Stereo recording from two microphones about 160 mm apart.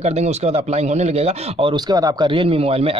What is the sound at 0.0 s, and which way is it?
Speech, 40° right (ahead or behind).